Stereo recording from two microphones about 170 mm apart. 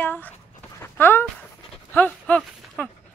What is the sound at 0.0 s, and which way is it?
Dog, 10° left (ahead or behind).